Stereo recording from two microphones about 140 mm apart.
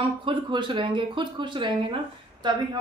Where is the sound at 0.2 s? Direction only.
35° right (ahead or behind).